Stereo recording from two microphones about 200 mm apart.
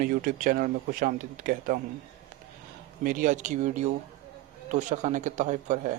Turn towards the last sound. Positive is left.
turn(degrees=-40)  # may be behind; listen again after turning